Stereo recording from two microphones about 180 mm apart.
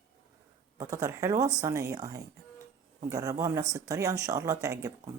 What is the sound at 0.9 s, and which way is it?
Speech, 15° right (ahead or behind).